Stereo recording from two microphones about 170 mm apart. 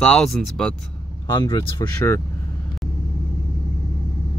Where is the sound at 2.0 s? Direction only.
20° left (ahead or behind).